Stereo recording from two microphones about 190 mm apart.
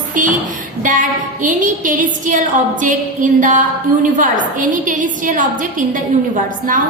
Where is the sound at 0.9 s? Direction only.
45° right (ahead or behind).